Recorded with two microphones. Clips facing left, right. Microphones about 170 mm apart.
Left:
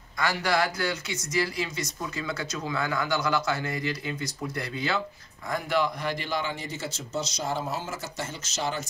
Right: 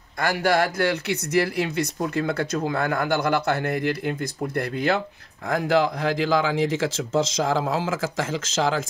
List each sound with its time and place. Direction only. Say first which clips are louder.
0.2 s speech: right 5 dB; 55° right (ahead or behind)
5.5 s speech: right 6 dB; 90° right